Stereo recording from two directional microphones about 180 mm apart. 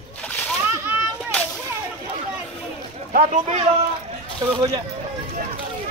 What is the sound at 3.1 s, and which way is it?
Speech, 40° right (ahead or behind).